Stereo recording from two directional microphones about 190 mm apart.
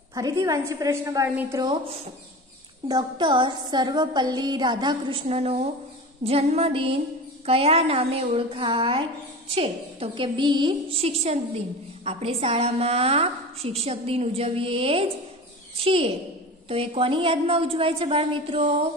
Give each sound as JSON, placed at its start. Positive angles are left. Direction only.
{"t": 0.1, "sound": "a woman's voice", "side_deg": -20}
{"t": 2.9, "sound": "a woman's voice", "side_deg": -25}